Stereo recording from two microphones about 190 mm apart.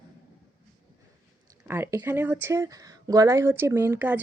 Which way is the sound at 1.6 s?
10° right (ahead or behind).